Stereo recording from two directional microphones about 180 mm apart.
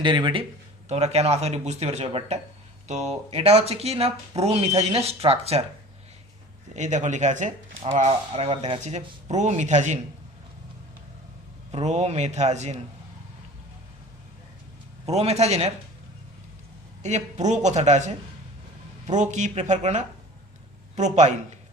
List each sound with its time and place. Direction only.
0.0 s speech: 25° right (ahead or behind)
0.9 s speech: 35° right (ahead or behind)
6.7 s speech: 40° right (ahead or behind)
11.7 s speech: 40° right (ahead or behind)
15.0 s speech: 35° right (ahead or behind)
17.0 s speech: 40° right (ahead or behind)